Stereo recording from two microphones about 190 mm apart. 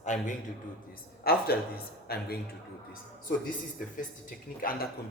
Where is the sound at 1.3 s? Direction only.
55° left (ahead or behind).